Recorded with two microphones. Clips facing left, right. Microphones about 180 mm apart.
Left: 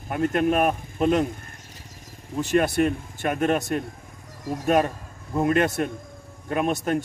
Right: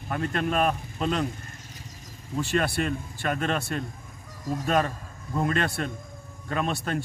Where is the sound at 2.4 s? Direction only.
20° left (ahead or behind).